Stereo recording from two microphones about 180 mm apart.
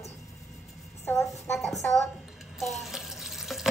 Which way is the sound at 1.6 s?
Centre (ahead or behind).